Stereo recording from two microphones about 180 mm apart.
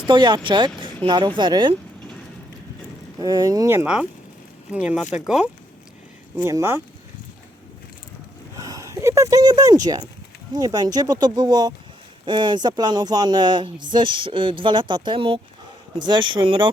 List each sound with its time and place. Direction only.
0.1 s speech: 25° right (ahead or behind)
3.2 s speech: 20° right (ahead or behind)
4.7 s speech: 5° right (ahead or behind)
6.3 s speech: 15° right (ahead or behind)
8.5 s a sound: 20° right (ahead or behind)
10.5 s speech: 20° right (ahead or behind)